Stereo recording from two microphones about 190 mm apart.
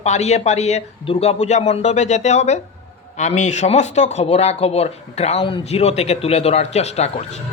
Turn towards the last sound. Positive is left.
turn(degrees=35)  # may be behind; listen again after turning